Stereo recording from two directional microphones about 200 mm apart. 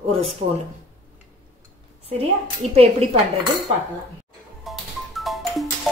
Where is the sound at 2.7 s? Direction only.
30° right (ahead or behind).